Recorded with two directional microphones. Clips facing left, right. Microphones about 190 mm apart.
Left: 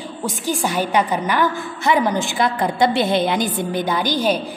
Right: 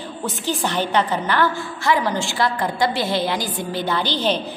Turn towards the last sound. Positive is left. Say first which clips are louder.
# left 2 dB
turn(degrees=10)  # may be behind; listen again after turning